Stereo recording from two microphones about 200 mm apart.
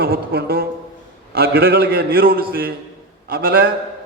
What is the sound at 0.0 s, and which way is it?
A man's voice, 50° right (ahead or behind).